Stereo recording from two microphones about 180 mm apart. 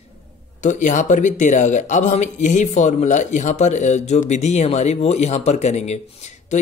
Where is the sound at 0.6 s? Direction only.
40° left (ahead or behind).